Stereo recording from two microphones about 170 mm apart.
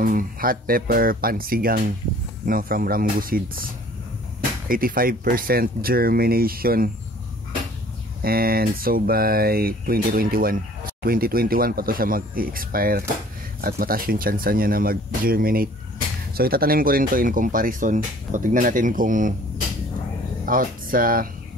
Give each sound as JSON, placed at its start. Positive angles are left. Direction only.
{"t": 0.0, "sound": "speech", "side_deg": -55}
{"t": 8.2, "sound": "speech", "side_deg": -60}
{"t": 20.4, "sound": "speech", "side_deg": -55}